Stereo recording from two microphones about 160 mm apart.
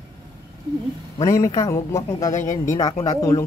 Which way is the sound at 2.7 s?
20° left (ahead or behind).